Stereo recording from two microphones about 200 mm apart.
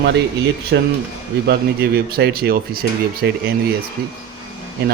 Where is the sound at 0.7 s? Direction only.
60° right (ahead or behind).